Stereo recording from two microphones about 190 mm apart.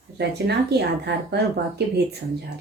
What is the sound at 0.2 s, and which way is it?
A woman's voice, 60° right (ahead or behind).